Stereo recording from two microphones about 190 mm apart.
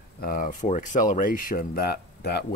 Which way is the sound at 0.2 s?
45° left (ahead or behind).